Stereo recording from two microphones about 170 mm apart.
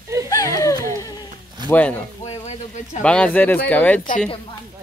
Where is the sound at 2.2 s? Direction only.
40° left (ahead or behind).